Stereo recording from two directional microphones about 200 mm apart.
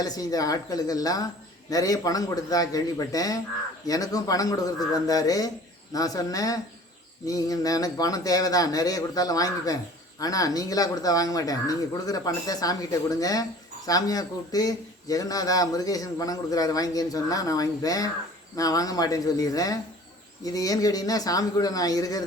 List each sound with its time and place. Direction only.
0.0 s a man's voice: 20° left (ahead or behind)